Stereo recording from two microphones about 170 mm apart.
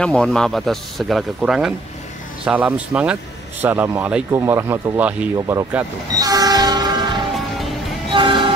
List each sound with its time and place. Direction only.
0.0 s speech: 5° left (ahead or behind); by 5.9 s 15° right (ahead or behind)
6.1 s train: 20° right (ahead or behind)